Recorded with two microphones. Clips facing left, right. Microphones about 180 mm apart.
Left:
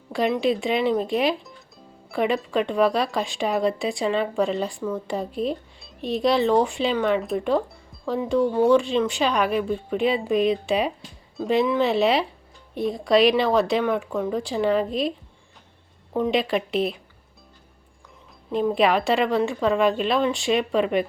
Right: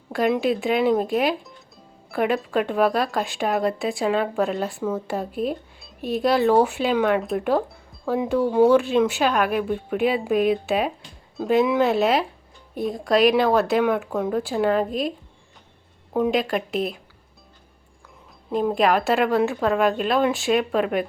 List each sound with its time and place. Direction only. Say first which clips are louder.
0.1 s speech: right 1 dB; centre (ahead or behind)
16.1 s speech: right 1 dB; 5° right (ahead or behind)
18.5 s speech: even; centre (ahead or behind)